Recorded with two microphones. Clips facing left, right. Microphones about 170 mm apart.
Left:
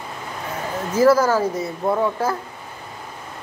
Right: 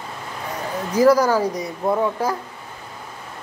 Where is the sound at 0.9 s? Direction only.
15° right (ahead or behind).